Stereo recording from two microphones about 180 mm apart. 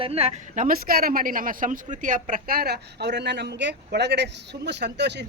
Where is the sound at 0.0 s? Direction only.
35° right (ahead or behind).